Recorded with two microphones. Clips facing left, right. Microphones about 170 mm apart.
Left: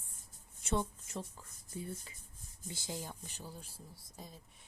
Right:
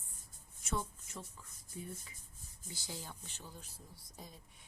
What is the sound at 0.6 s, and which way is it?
Speech, 30° left (ahead or behind).